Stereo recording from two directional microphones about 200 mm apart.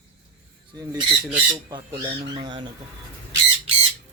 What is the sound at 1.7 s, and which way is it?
Speech, 20° right (ahead or behind).